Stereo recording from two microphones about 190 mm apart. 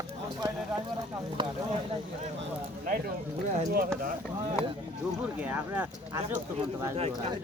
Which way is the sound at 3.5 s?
50° right (ahead or behind).